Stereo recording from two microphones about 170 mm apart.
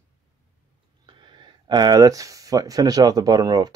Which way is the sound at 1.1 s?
25° right (ahead or behind).